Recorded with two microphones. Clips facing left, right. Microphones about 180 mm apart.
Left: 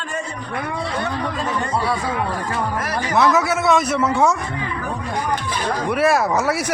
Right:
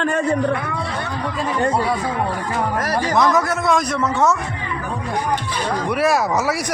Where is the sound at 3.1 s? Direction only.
5° left (ahead or behind).